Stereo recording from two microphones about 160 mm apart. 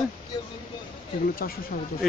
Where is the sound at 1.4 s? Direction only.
65° left (ahead or behind).